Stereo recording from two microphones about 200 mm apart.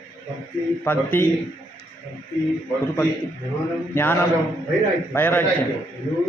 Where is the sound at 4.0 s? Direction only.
10° left (ahead or behind).